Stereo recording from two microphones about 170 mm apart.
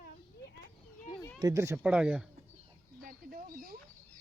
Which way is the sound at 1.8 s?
5° right (ahead or behind).